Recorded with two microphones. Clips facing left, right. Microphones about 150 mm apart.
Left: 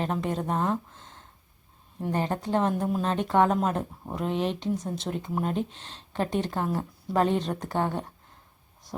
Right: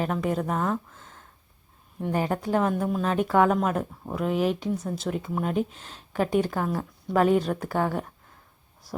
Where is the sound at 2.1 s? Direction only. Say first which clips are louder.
Right 2 dB; 10° right (ahead or behind).